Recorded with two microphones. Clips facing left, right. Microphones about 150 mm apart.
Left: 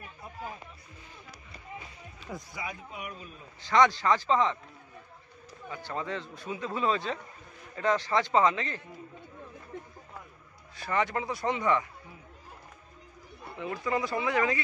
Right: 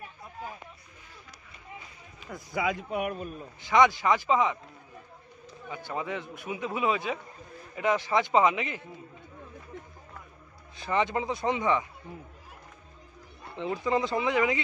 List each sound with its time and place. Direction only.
2.5 s a man's voice: 80° right; by 3.4 s 55° right (ahead or behind)
3.6 s a man's voice: 15° right (ahead or behind)
5.7 s a man's voice: 15° right (ahead or behind)
10.8 s speech: 20° right (ahead or behind)
13.6 s speech: 25° right (ahead or behind)